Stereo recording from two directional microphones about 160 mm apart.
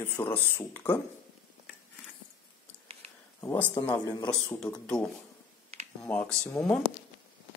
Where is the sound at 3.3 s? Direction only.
15° left (ahead or behind).